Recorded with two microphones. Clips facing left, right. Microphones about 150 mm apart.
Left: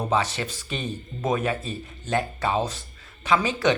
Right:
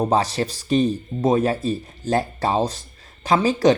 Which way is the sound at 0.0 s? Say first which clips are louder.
Right 5 dB; 40° right (ahead or behind).